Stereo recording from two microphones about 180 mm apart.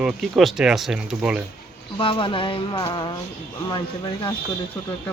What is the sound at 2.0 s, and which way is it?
Speech, 30° left (ahead or behind).